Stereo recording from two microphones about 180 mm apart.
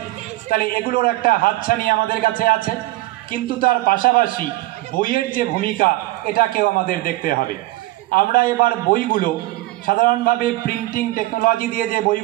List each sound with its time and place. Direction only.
0.5 s a man's voice: 50° left (ahead or behind)